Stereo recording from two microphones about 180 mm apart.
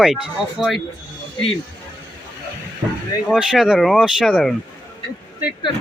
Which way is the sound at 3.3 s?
Centre (ahead or behind).